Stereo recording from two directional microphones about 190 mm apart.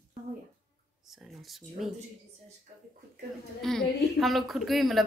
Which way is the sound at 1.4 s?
Centre (ahead or behind).